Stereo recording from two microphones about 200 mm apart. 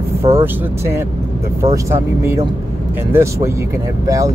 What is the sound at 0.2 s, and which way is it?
Speech, 25° right (ahead or behind).